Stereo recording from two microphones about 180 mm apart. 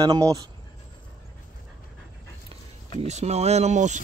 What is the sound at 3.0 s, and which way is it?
Speech, 35° right (ahead or behind).